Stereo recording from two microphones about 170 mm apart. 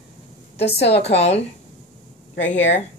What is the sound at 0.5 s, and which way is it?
Speech, 75° left (ahead or behind).